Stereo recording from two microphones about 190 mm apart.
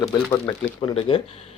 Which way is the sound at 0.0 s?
20° left (ahead or behind).